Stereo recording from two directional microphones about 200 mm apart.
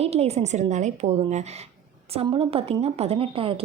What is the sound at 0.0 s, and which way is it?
A woman's voice, 30° right (ahead or behind).